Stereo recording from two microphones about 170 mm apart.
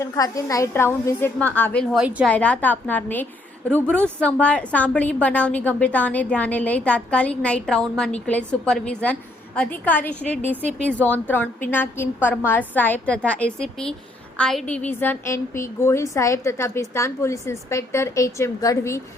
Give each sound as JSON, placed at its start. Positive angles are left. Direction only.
{"t": 0.0, "sound": "a woman's voice", "side_deg": 20}